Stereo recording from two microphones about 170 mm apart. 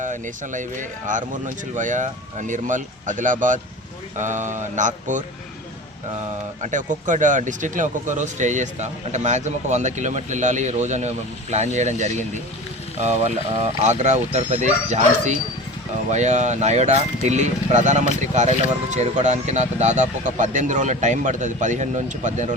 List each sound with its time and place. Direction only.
0.0 s speech: 50° right (ahead or behind)
6.6 s speech: 50° right (ahead or behind)